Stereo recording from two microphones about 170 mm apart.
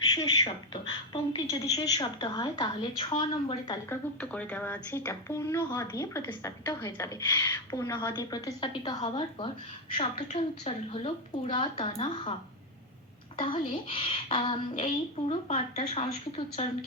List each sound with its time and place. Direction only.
0.1 s a woman's voice: 25° left (ahead or behind)
3.8 s a woman's voice: 10° left (ahead or behind); by 9.5 s 25° left (ahead or behind)
9.9 s a woman's voice: 40° left (ahead or behind)